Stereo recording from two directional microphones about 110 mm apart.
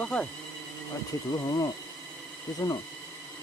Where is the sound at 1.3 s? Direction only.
35° left (ahead or behind).